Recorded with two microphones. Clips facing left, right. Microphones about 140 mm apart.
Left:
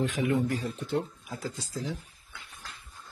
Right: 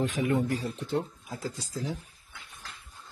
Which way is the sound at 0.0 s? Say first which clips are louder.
Even; 45° right (ahead or behind).